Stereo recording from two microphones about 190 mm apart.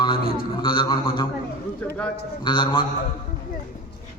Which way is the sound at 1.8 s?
10° left (ahead or behind).